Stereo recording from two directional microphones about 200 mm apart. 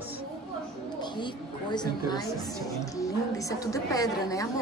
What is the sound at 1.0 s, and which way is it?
A woman's voice, 20° left (ahead or behind).